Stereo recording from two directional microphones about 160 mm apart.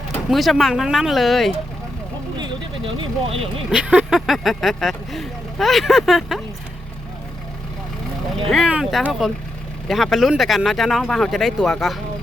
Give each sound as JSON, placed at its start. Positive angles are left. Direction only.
{"t": 0.3, "sound": "speech", "side_deg": 0}
{"t": 2.4, "sound": "speech", "side_deg": -30}
{"t": 3.7, "sound": "speech", "side_deg": -5}
{"t": 8.4, "sound": "speech", "side_deg": -5}